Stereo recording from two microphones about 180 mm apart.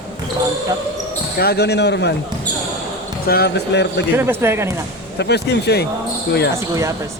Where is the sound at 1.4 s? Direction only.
60° left (ahead or behind).